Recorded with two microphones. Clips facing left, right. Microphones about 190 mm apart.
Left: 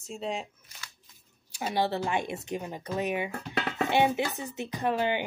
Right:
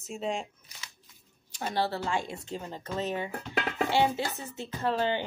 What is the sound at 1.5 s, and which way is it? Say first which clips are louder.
A woman's voice: left 2 dB; 10° left (ahead or behind).